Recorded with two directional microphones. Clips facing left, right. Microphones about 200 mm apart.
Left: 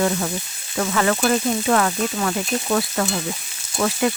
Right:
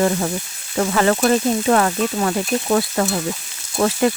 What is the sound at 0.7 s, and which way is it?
Frying, 35° right (ahead or behind).